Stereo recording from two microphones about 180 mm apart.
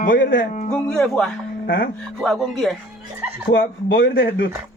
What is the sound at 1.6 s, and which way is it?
Speech, 55° left (ahead or behind).